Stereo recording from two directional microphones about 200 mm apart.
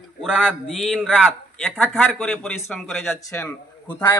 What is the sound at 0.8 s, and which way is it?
A man's voice, centre (ahead or behind).